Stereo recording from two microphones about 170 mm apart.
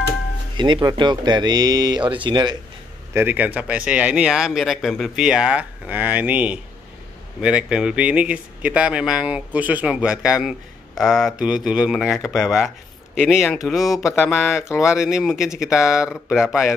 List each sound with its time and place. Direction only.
0.6 s speech: 30° right (ahead or behind)
3.1 s speech: 10° right (ahead or behind)
14.0 s a sound: 15° left (ahead or behind)
14.3 s speech: 5° right (ahead or behind)
14.7 s a sound: 15° left (ahead or behind)
15.0 s speech: 5° right (ahead or behind)